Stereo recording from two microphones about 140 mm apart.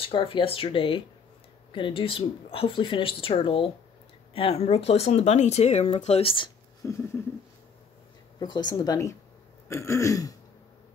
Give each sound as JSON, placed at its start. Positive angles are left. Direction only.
{"t": 0.0, "sound": "a woman's voice", "side_deg": 40}
{"t": 6.8, "sound": "a sound", "side_deg": 20}
{"t": 8.4, "sound": "speech", "side_deg": 30}